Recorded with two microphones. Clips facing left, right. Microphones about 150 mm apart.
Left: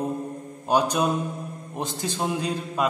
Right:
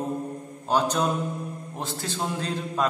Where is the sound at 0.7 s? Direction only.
15° left (ahead or behind).